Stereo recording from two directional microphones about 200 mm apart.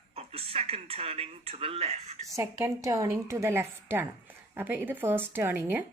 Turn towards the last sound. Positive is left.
turn(degrees=-10)  # may be behind; listen again after turning